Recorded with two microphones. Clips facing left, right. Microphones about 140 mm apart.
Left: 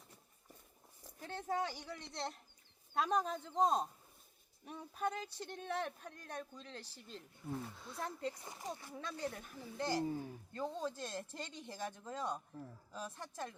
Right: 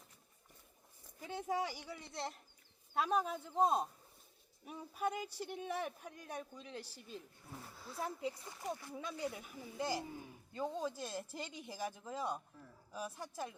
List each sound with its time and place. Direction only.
1.2 s speech: 10° right (ahead or behind)